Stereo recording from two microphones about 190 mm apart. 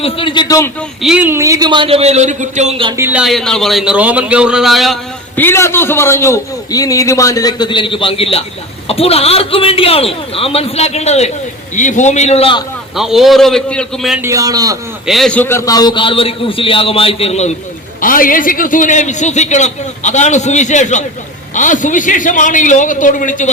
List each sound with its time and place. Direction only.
0.0 s a man's voice: 25° left (ahead or behind)
0.8 s a man's voice: 5° right (ahead or behind); by 2.9 s 30° right (ahead or behind)
2.9 s speech: 10° right (ahead or behind)
5.4 s a man's voice: 10° left (ahead or behind); by 12.6 s 30° left (ahead or behind)
13.0 s speech: centre (ahead or behind)
14.2 s a man's voice: 15° right (ahead or behind)
15.0 s a man's voice: centre (ahead or behind); by 17.5 s 35° left (ahead or behind)
18.0 s a man's voice: 45° left (ahead or behind)